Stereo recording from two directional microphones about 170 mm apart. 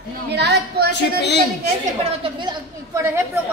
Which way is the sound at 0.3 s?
80° right.